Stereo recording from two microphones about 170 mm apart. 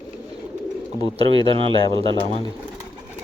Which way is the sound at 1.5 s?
30° right (ahead or behind).